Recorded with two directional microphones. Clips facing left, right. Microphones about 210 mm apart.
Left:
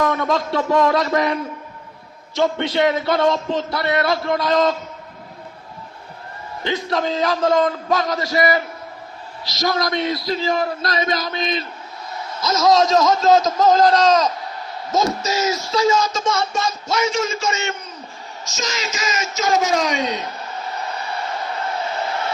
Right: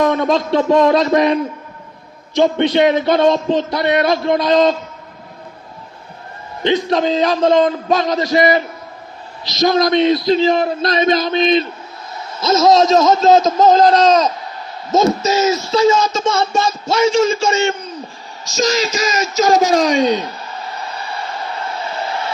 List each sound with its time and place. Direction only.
0.0 s child singing: 20° right (ahead or behind)
6.6 s child singing: 20° right (ahead or behind)
18.4 s speech: 35° right (ahead or behind)